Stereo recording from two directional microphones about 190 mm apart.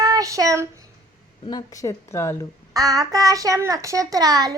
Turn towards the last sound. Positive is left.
turn(degrees=-20)  # may be behind; listen again after turning